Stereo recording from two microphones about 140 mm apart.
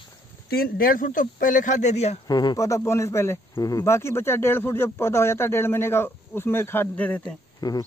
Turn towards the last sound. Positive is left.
turn(degrees=25)  # may be behind; listen again after turning